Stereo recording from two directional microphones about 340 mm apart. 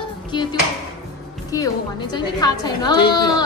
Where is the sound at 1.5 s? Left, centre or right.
Centre.